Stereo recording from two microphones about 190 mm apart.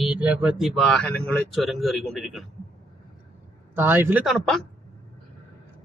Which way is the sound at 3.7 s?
10° right (ahead or behind).